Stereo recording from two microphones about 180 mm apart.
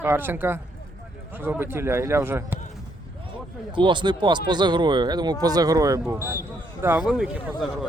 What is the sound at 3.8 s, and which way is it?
Speech, 25° right (ahead or behind).